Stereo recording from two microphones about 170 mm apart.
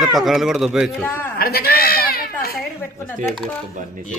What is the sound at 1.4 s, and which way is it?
Speech, 65° left (ahead or behind).